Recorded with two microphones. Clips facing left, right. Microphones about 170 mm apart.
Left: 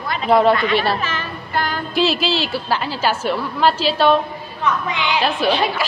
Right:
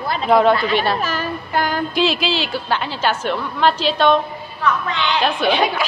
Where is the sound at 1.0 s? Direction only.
45° right (ahead or behind).